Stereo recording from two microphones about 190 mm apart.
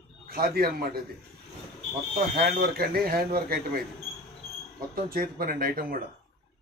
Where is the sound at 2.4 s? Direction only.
50° right (ahead or behind).